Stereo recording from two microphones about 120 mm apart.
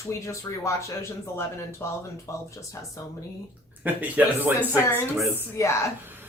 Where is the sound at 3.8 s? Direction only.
15° right (ahead or behind).